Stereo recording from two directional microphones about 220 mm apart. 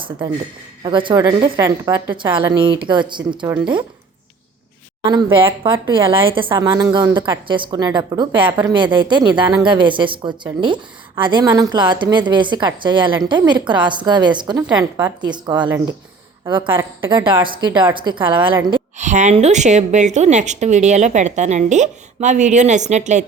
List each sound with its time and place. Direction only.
0.9 s a woman's voice: 20° right (ahead or behind)
5.0 s a woman's voice: 20° right (ahead or behind)
9.3 s speech: 5° right (ahead or behind)
9.6 s a woman's voice: 20° right (ahead or behind)
18.9 s a woman's voice: 30° right (ahead or behind)